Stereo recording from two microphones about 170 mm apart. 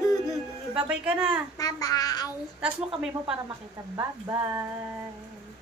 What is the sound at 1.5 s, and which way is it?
Babbling, 20° left (ahead or behind).